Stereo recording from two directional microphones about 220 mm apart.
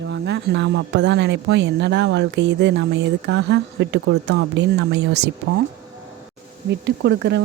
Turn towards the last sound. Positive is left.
turn(degrees=-50)  # may be behind; listen again after turning